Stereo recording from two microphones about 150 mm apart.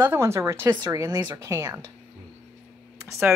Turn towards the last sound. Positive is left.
turn(degrees=-20)  # may be behind; listen again after turning